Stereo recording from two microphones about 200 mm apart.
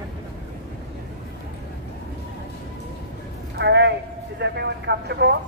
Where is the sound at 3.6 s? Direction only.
60° right (ahead or behind).